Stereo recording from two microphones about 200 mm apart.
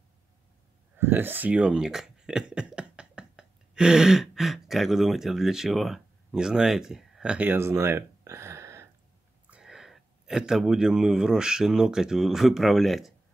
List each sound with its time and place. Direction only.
0.9 s speech: 10° right (ahead or behind)
9.5 s a man's voice: 5° right (ahead or behind)